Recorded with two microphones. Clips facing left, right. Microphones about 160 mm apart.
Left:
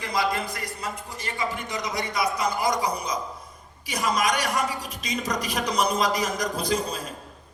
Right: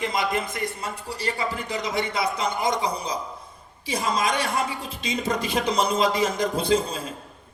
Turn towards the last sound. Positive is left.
turn(degrees=-25)  # may be behind; listen again after turning